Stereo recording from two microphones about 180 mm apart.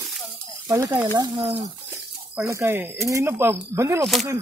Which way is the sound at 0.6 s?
15° right (ahead or behind).